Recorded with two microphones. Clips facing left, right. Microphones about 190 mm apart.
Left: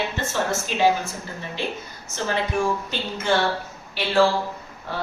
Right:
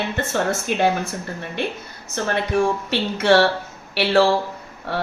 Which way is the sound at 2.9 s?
75° right (ahead or behind).